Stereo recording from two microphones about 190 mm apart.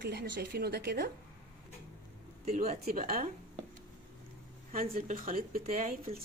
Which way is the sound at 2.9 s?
50° right (ahead or behind).